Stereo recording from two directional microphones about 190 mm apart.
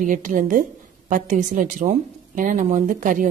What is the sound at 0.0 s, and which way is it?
A woman's voice, 45° right (ahead or behind).